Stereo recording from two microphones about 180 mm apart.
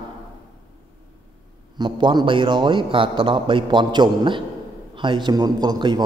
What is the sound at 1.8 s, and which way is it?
Speech, 25° right (ahead or behind).